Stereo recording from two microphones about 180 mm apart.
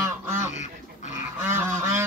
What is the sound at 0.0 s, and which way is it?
Goose, 15° right (ahead or behind).